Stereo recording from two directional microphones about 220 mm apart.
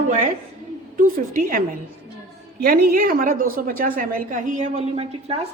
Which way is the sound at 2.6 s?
45° right (ahead or behind).